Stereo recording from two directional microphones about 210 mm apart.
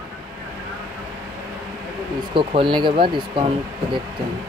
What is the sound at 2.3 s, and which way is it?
Speech, 25° right (ahead or behind).